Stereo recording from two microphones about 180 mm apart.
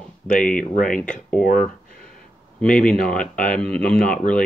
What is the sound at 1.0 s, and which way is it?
Speech, 5° left (ahead or behind).